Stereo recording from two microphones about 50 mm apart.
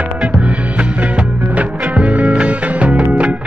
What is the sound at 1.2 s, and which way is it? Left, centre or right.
Music, right.